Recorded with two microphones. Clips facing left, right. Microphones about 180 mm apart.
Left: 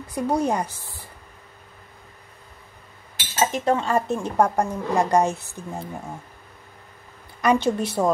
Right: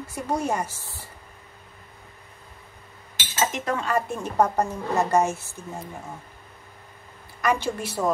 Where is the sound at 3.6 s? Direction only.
25° left (ahead or behind).